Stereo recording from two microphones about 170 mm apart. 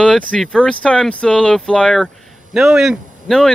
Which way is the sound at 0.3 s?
5° left (ahead or behind).